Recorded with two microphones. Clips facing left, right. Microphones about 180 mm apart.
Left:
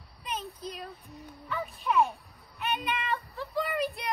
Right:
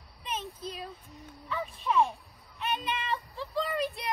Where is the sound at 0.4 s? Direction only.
25° right (ahead or behind).